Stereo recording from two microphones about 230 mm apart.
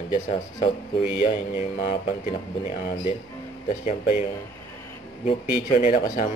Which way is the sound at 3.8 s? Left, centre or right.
Left.